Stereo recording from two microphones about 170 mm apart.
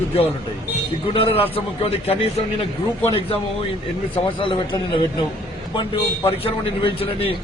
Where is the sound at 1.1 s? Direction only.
35° left (ahead or behind).